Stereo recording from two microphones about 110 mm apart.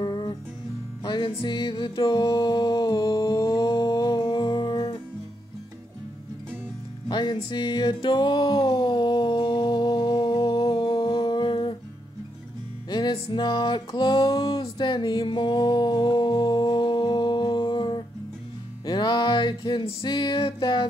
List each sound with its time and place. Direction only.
0.0 s music: 45° left (ahead or behind)
3.3 s music: 35° left (ahead or behind)
7.1 s music: 45° left (ahead or behind)
13.1 s music: 50° left (ahead or behind)